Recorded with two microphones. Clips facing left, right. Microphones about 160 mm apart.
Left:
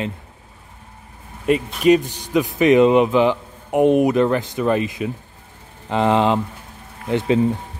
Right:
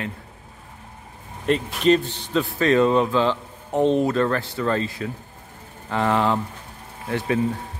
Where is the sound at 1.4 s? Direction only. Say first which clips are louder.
Left 3 dB; 10° left (ahead or behind).